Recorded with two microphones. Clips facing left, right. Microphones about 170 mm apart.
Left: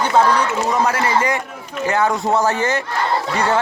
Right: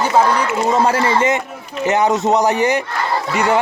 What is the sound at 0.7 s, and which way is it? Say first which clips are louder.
A man's voice: right 5 dB; 30° right (ahead or behind).